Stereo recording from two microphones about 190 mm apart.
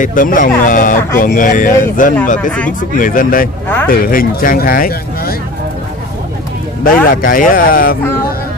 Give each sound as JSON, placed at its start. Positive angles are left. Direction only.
{"t": 0.0, "sound": "speech", "side_deg": 45}
{"t": 6.8, "sound": "speech", "side_deg": 45}